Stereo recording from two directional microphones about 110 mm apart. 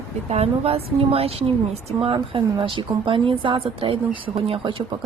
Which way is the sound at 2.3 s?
50° right (ahead or behind).